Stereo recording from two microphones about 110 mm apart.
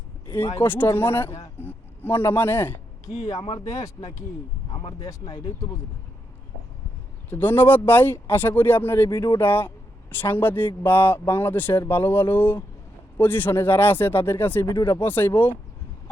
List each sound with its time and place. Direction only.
0.3 s a man's voice: 25° left (ahead or behind)
1.5 s a sound: 20° left (ahead or behind)
3.8 s a man's voice: 30° left (ahead or behind)
4.7 s speech: 40° left (ahead or behind)
7.3 s a man's voice: 20° left (ahead or behind)
9.0 s speech: 35° left (ahead or behind)
9.4 s a man's voice: 20° left (ahead or behind)
14.7 s speech: 35° left (ahead or behind)
14.9 s a man's voice: 20° left (ahead or behind)